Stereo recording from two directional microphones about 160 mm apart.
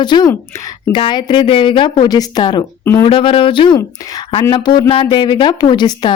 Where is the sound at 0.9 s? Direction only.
30° left (ahead or behind).